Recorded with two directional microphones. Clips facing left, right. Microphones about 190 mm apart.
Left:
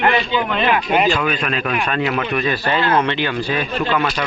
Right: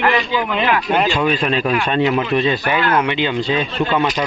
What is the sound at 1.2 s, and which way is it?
Speech, 30° right (ahead or behind).